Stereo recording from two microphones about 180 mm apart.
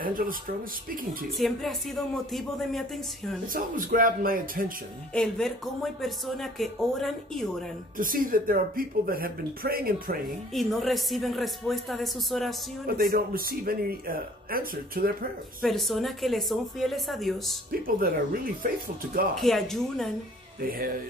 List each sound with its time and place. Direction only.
0.0 s speech: 50° right (ahead or behind)
1.4 s speech: centre (ahead or behind)
3.5 s speech: 50° right (ahead or behind)
5.1 s speech: 5° left (ahead or behind)
8.0 s speech: 50° right (ahead or behind)
10.5 s speech: centre (ahead or behind)
12.8 s speech: 55° right (ahead or behind)
15.6 s speech: centre (ahead or behind)
17.6 s speech: 55° right (ahead or behind)
19.3 s speech: centre (ahead or behind)